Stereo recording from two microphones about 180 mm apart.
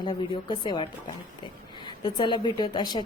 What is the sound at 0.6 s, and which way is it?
Speech, 25° left (ahead or behind).